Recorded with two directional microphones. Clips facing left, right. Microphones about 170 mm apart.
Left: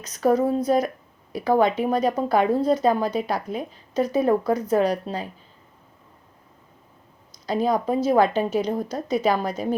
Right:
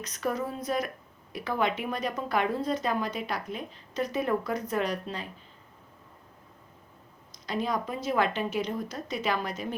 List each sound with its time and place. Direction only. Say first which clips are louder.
0.1 s speech: left 12 dB; 35° left (ahead or behind)
7.4 s speech: left 8 dB; 40° left (ahead or behind)